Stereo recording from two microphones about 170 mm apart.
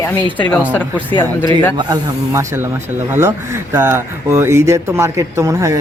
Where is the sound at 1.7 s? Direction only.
25° right (ahead or behind).